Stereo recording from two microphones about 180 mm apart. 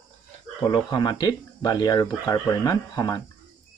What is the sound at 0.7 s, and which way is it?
Speech, 25° left (ahead or behind).